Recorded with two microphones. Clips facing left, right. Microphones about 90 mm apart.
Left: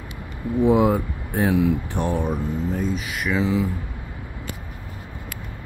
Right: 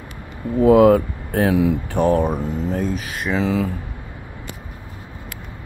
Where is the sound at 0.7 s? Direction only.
70° right (ahead or behind).